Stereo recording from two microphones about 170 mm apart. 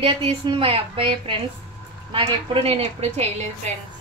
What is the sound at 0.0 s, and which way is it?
A woman's voice, 30° right (ahead or behind).